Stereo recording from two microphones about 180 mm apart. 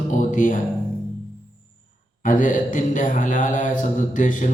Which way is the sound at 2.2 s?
45° left (ahead or behind).